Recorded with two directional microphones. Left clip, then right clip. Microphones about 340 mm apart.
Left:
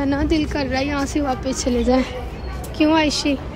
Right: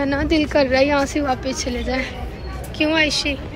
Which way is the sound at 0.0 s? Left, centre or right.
Centre.